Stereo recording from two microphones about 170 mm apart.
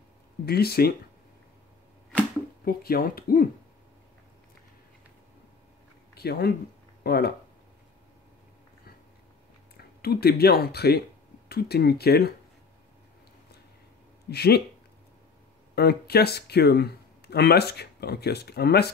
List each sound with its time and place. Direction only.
0.5 s speech: 65° left (ahead or behind)
2.6 s speech: 60° left (ahead or behind)
6.1 s speech: 65° left (ahead or behind)
9.8 s speech: 65° left (ahead or behind)
14.3 s speech: 70° left (ahead or behind)
15.7 s speech: 70° left (ahead or behind)